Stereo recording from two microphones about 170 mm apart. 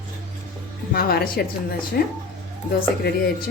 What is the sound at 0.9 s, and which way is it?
A woman's voice, 65° left (ahead or behind).